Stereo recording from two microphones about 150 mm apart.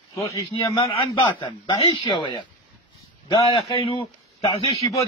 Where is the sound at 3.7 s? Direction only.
40° left (ahead or behind).